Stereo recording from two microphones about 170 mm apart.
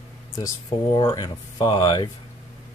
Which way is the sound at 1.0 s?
25° left (ahead or behind).